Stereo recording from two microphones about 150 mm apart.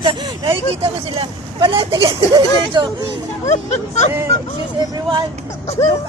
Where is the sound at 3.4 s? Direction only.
50° left (ahead or behind).